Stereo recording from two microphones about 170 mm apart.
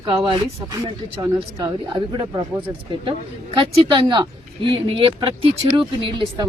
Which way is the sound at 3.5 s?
30° right (ahead or behind).